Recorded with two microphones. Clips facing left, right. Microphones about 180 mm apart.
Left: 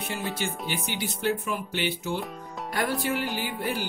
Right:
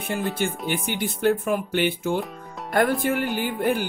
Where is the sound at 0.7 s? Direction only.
55° right (ahead or behind).